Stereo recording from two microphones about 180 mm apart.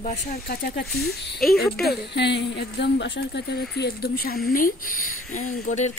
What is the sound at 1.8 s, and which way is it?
A woman's voice, 70° left (ahead or behind).